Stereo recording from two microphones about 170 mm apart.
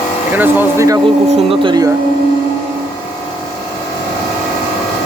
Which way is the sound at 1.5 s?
25° right (ahead or behind).